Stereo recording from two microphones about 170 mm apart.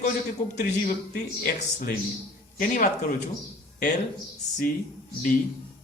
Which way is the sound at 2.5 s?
45° left (ahead or behind).